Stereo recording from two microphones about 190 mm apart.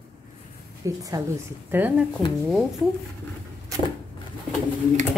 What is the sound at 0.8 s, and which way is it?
A woman's voice, 15° right (ahead or behind).